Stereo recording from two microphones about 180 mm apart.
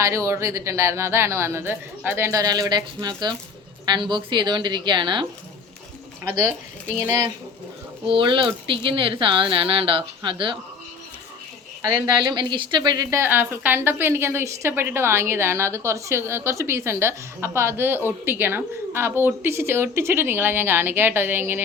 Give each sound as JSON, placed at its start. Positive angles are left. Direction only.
{"t": 0.0, "sound": "a woman's voice", "side_deg": -15}
{"t": 8.0, "sound": "speech", "side_deg": -30}
{"t": 12.2, "sound": "a woman's voice", "side_deg": -25}